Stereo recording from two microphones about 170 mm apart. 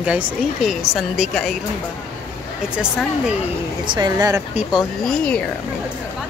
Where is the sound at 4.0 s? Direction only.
20° right (ahead or behind).